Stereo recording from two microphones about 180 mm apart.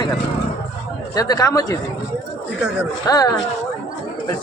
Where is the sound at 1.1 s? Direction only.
20° left (ahead or behind).